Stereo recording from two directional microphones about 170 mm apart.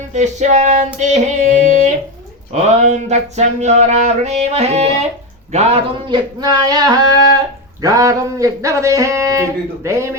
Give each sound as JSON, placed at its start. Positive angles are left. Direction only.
{"t": 0.1, "sound": "music", "side_deg": -45}
{"t": 2.5, "sound": "a sound", "side_deg": -40}
{"t": 6.1, "sound": "speech", "side_deg": -25}